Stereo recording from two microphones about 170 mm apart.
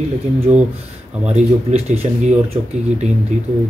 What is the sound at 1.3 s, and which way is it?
Speech, 40° right (ahead or behind).